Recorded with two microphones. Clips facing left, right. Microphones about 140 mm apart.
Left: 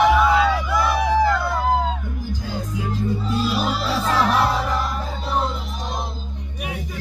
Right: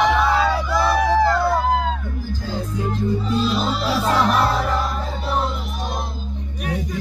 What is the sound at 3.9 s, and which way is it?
Music, 10° right (ahead or behind).